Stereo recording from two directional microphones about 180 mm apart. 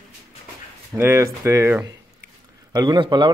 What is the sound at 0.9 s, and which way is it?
A man's voice, 15° right (ahead or behind).